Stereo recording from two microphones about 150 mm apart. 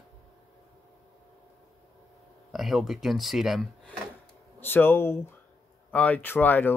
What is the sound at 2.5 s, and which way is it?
Speech, centre (ahead or behind).